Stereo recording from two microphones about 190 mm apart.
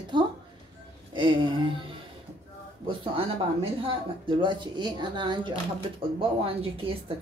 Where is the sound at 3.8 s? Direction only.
25° right (ahead or behind).